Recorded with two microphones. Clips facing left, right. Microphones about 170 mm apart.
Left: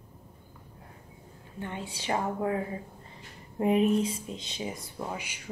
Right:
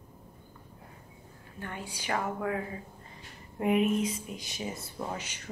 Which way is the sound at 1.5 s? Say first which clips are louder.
Left 3 dB; 25° left (ahead or behind).